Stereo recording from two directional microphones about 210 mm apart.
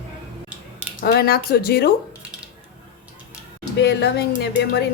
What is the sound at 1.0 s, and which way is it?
Speech, 45° left (ahead or behind).